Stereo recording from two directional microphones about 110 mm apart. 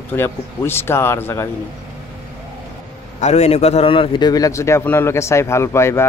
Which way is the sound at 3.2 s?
90° left.